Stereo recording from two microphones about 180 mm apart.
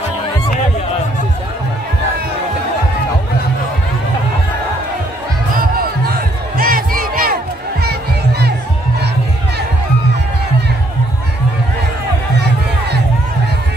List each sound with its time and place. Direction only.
6.6 s crowd: 50° right (ahead or behind)
12.4 s music: 70° right (ahead or behind)